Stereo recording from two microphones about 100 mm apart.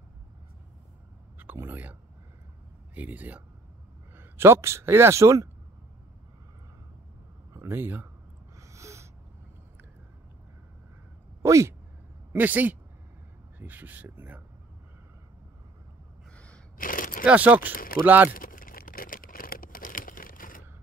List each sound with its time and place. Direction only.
1.4 s speech: 20° right (ahead or behind)
7.5 s speech: 25° right (ahead or behind)
8.5 s a sound: 30° right (ahead or behind)
11.4 s speech: 30° right (ahead or behind)
12.3 s speech: 15° right (ahead or behind)
17.2 s speech: 15° right (ahead or behind)